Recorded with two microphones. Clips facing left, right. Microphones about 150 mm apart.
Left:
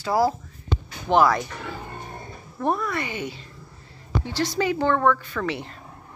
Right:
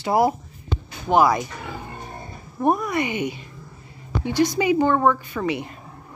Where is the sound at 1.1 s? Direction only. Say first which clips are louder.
Right 1 dB; 10° right (ahead or behind).